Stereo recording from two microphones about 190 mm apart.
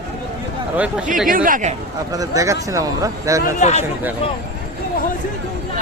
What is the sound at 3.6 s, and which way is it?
Speech, 35° left (ahead or behind).